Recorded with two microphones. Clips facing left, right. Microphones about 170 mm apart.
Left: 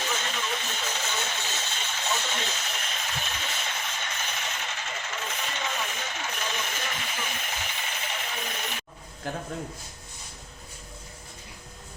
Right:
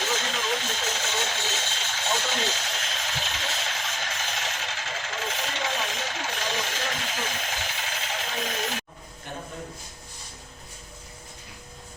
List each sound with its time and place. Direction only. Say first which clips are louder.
0.3 s hiss: right 3 dB; 90° right
1.2 s vehicle: right 3 dB; 90° right